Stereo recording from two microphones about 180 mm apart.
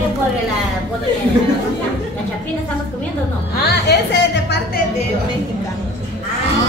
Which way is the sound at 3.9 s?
70° left (ahead or behind).